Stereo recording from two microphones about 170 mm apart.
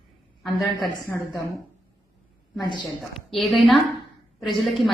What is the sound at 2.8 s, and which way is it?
A woman's voice, centre (ahead or behind).